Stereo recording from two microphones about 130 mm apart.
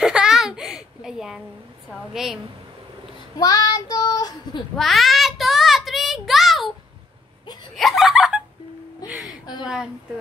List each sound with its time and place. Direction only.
0.0 s a sound: 5° right (ahead or behind)
1.9 s a woman's voice: centre (ahead or behind)
3.3 s child singing: 30° left (ahead or behind)
4.7 s child singing: centre (ahead or behind)
7.7 s snicker: centre (ahead or behind)
9.1 s a sound: centre (ahead or behind)